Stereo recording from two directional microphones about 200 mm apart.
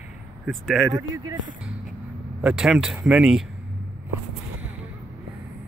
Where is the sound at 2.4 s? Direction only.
5° right (ahead or behind).